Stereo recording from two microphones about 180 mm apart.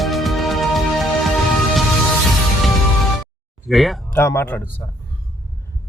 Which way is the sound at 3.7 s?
Centre (ahead or behind).